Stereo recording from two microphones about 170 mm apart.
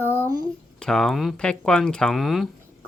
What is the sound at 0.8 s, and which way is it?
Speech, 5° left (ahead or behind).